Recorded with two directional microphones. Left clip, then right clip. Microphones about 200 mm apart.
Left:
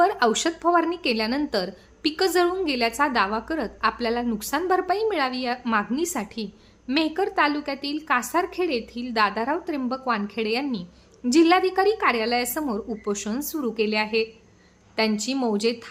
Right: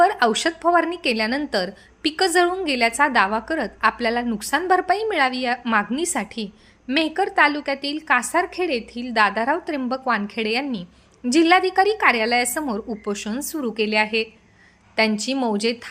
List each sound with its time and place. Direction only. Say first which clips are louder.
0.0 s a woman's voice: right 3 dB; 5° right (ahead or behind)